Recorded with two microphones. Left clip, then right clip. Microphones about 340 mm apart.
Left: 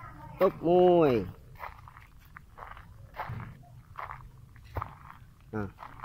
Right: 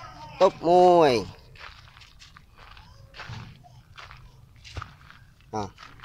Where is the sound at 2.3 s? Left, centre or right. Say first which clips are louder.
Left 3 dB; left.